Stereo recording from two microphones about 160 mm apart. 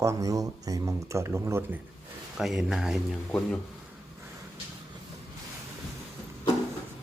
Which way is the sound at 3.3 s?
10° left (ahead or behind).